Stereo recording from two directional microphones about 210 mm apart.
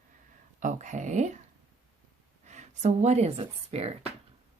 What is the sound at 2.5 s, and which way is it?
Speech, 35° right (ahead or behind).